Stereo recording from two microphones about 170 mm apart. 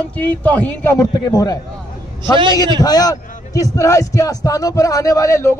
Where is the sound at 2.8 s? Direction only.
20° left (ahead or behind).